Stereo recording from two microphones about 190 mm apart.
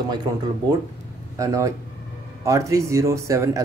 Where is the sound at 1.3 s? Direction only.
15° right (ahead or behind).